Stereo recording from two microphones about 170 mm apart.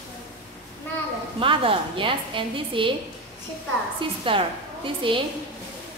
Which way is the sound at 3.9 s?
30° right (ahead or behind).